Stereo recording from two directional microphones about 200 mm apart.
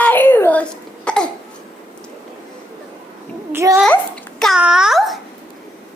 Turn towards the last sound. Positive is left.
turn(degrees=0)  # may be behind; listen again after turning